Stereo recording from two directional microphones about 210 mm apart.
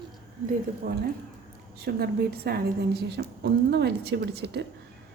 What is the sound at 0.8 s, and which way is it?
Speech, 50° right (ahead or behind).